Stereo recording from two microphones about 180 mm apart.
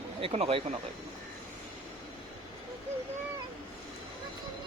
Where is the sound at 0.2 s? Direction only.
30° right (ahead or behind).